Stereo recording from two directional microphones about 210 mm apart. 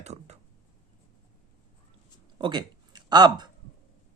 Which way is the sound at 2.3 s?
20° right (ahead or behind).